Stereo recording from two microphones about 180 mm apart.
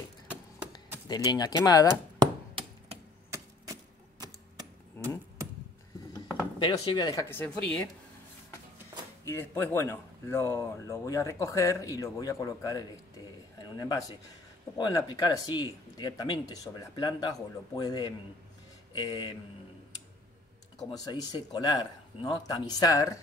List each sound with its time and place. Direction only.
1.0 s speech: 25° left (ahead or behind)
2.1 s hammer: 30° right (ahead or behind)
3.3 s typewriter: 15° right (ahead or behind)
5.0 s vehicle: 10° left (ahead or behind)
6.6 s speech: 25° left (ahead or behind)
9.2 s speech: 15° left (ahead or behind)
20.9 s speech: 20° left (ahead or behind)